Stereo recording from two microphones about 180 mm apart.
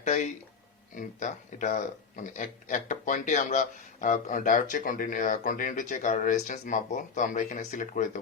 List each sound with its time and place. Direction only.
0.0 s speech: 40° left (ahead or behind)